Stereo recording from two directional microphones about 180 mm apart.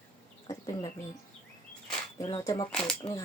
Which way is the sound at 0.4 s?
20° left (ahead or behind).